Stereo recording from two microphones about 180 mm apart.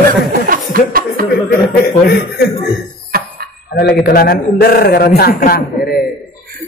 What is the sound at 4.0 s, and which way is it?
A man's voice, 55° left (ahead or behind).